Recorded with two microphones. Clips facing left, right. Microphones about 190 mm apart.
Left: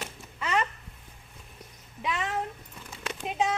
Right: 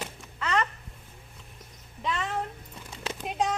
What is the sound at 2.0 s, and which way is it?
Cat, 5° left (ahead or behind).